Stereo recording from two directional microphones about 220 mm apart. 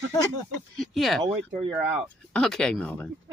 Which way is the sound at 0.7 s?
Centre (ahead or behind).